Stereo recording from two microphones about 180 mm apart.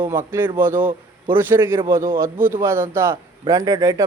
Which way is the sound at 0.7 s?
45° right (ahead or behind).